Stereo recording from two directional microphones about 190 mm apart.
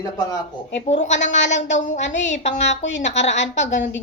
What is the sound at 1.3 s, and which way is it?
A woman's voice, 70° left (ahead or behind).